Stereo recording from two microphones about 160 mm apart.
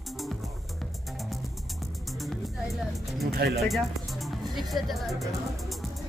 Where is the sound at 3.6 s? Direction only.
Centre (ahead or behind).